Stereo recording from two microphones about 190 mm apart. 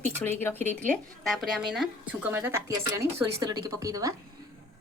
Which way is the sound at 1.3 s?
Centre (ahead or behind).